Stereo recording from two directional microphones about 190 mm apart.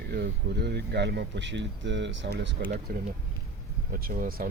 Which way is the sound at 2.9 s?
50° right (ahead or behind).